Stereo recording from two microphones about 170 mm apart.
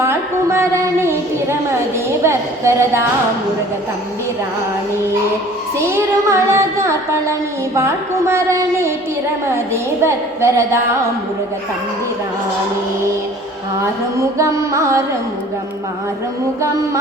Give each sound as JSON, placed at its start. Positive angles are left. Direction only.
{"t": 0.0, "sound": "a woman's voice", "side_deg": -15}
{"t": 2.2, "sound": "child singing", "side_deg": -15}
{"t": 5.7, "sound": "child singing", "side_deg": -15}
{"t": 14.2, "sound": "child singing", "side_deg": -15}